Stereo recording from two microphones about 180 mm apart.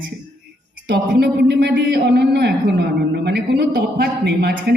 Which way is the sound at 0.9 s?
60° right (ahead or behind).